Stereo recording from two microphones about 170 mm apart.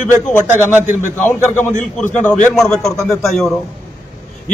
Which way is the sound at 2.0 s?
10° left (ahead or behind).